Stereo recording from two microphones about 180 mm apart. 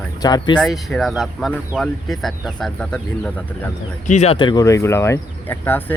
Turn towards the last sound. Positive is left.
turn(degrees=10)  # may be behind; listen again after turning